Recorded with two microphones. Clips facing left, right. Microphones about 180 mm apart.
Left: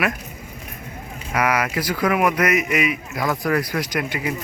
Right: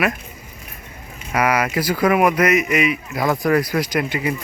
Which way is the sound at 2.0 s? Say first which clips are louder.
Right 3 dB; 35° right (ahead or behind).